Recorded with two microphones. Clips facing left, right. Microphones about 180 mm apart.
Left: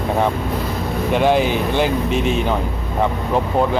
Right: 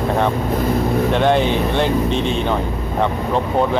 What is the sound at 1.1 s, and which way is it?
Speech, 5° left (ahead or behind).